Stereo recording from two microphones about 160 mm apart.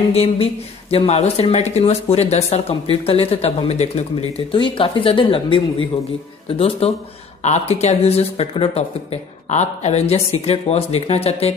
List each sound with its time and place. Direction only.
0.1 s speech: 40° left (ahead or behind)